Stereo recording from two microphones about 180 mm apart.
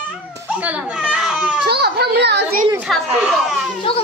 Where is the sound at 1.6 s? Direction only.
65° right (ahead or behind).